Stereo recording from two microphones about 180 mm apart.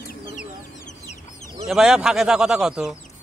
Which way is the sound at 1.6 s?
5° right (ahead or behind).